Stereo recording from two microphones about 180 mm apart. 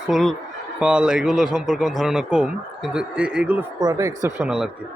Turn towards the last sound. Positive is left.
turn(degrees=-15)  # may be behind; listen again after turning